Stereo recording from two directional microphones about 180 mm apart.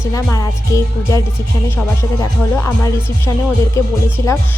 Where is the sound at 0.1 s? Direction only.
20° left (ahead or behind).